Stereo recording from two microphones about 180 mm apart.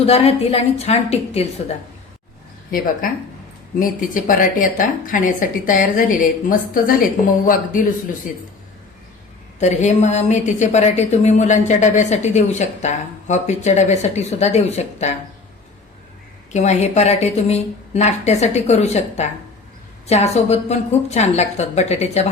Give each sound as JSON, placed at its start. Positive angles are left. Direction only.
{"t": 0.0, "sound": "a woman's voice", "side_deg": 35}
{"t": 3.8, "sound": "a woman's voice", "side_deg": 50}
{"t": 8.3, "sound": "a woman's voice", "side_deg": 50}
{"t": 9.6, "sound": "a woman's voice", "side_deg": 40}
{"t": 16.5, "sound": "a woman's voice", "side_deg": 40}